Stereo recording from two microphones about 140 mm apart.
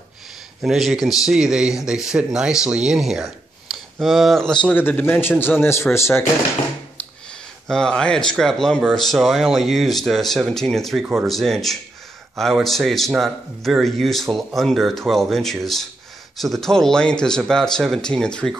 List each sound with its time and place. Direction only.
0.6 s speech: centre (ahead or behind)
3.7 s a sound: centre (ahead or behind)
4.0 s speech: centre (ahead or behind)
4.7 s speech: 15° left (ahead or behind)
7.6 s speech: 5° left (ahead or behind)